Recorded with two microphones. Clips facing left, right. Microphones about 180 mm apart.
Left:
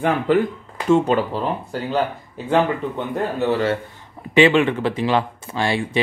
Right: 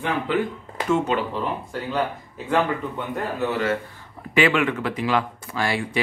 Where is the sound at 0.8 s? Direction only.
35° left (ahead or behind).